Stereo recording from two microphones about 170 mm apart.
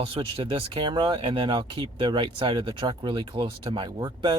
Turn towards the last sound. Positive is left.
turn(degrees=-25)  # may be behind; listen again after turning